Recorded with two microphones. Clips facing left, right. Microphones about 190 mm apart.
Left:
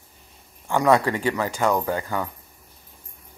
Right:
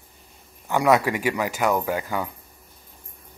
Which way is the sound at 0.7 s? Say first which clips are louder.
Even; 10° right (ahead or behind).